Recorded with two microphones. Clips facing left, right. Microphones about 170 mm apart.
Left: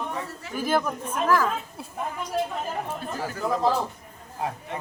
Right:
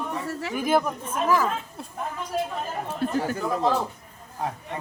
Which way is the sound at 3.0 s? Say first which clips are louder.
Right 7 dB; 70° right (ahead or behind).